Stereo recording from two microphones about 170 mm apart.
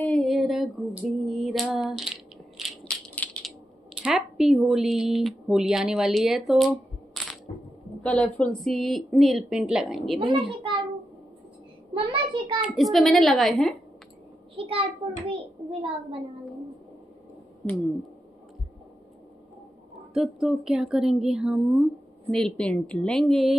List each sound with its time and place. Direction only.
0.0 s a sound: 5° left (ahead or behind)
1.2 s crushing: centre (ahead or behind)
4.0 s speech: 5° right (ahead or behind)
7.2 s music: centre (ahead or behind)
8.0 s speech: 5° left (ahead or behind)
10.1 s a child's voice: 30° right (ahead or behind)
11.9 s a sound: 30° right (ahead or behind)
12.7 s speech: centre (ahead or behind)
14.5 s a child's voice: 30° right (ahead or behind)
17.6 s a sound: centre (ahead or behind)
20.2 s speech: centre (ahead or behind)